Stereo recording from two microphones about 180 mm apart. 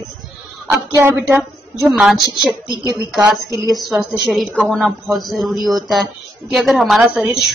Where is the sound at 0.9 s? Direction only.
15° right (ahead or behind).